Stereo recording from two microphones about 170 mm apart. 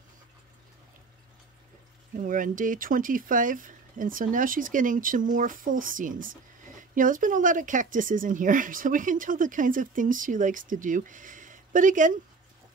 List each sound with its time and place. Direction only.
2.1 s speech: 50° right (ahead or behind)